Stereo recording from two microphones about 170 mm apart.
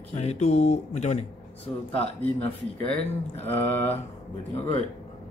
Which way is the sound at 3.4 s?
10° left (ahead or behind).